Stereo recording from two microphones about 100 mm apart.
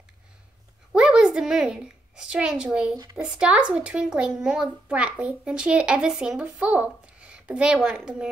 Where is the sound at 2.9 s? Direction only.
40° right (ahead or behind).